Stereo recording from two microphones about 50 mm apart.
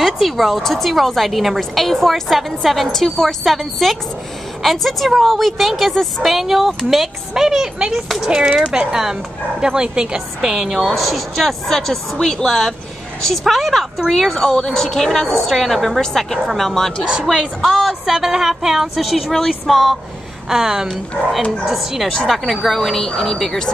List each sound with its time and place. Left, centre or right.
0.0 s a woman's voice: centre
17.1 s a woman's voice: centre
20.4 s a woman's voice: centre